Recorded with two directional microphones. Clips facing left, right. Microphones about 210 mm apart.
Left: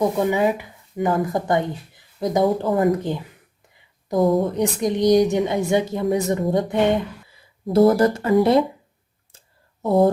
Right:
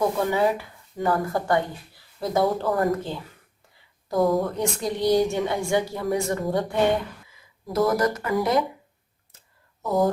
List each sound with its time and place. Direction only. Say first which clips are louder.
0.0 s a woman's voice: left 3 dB; 20° left (ahead or behind)
7.3 s speech: left 8 dB; 30° left (ahead or behind)
9.8 s speech: left 5 dB; 25° left (ahead or behind)